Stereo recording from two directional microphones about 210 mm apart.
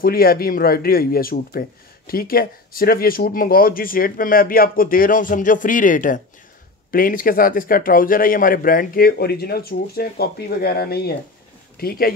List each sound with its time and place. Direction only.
0.0 s a man's voice: 45° left (ahead or behind)